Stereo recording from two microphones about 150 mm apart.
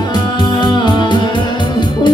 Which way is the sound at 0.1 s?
30° left (ahead or behind).